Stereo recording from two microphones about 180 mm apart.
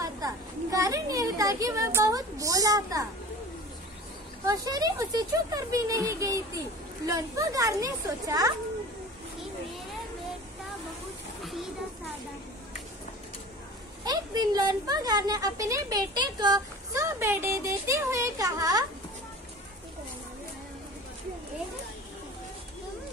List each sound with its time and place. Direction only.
0.0 s a sound: 20° right (ahead or behind)
4.5 s a woman's voice: 20° right (ahead or behind)
14.0 s a woman's voice: 20° right (ahead or behind)